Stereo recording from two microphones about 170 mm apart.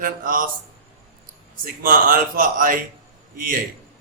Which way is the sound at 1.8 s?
55° right (ahead or behind).